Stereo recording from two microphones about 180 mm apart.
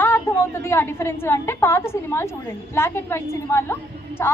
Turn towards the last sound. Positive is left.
turn(degrees=15)  # may be behind; listen again after turning